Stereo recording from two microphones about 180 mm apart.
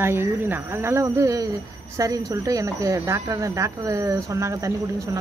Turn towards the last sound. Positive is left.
turn(degrees=-15)  # may be behind; listen again after turning